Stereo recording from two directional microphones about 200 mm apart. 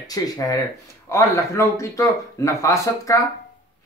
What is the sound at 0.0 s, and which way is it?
Speech, 20° left (ahead or behind).